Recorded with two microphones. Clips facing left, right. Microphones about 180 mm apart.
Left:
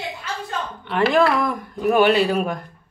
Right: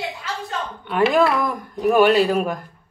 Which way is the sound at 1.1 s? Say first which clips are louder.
Even; centre (ahead or behind).